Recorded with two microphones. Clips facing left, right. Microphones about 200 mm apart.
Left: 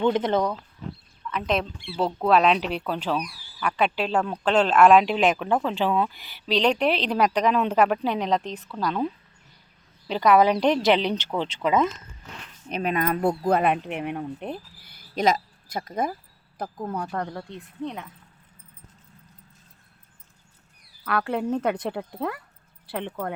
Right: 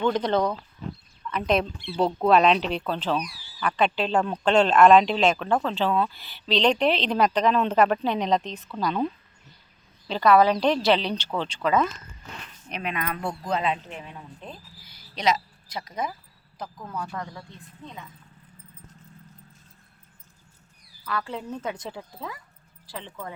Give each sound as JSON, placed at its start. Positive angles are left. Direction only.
{"t": 0.0, "sound": "speech", "side_deg": 20}
{"t": 1.3, "sound": "a woman's voice", "side_deg": 0}
{"t": 10.1, "sound": "speech", "side_deg": 15}
{"t": 12.6, "sound": "speech", "side_deg": 40}
{"t": 13.5, "sound": "speech", "side_deg": 60}
{"t": 16.7, "sound": "speech", "side_deg": 35}
{"t": 17.0, "sound": "speech", "side_deg": 55}
{"t": 21.0, "sound": "speech", "side_deg": 60}